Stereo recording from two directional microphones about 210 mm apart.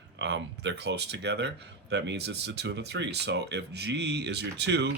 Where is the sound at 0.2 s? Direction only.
55° right (ahead or behind).